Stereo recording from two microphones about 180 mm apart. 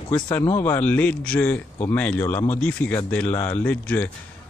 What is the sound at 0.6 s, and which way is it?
A man's voice, 10° left (ahead or behind).